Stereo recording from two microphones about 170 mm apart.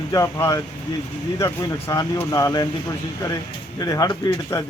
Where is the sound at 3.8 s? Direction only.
20° left (ahead or behind).